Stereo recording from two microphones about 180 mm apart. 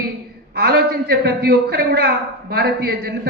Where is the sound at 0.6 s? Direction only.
60° right (ahead or behind).